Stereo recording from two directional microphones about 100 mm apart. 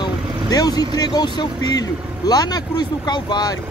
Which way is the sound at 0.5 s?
40° left (ahead or behind).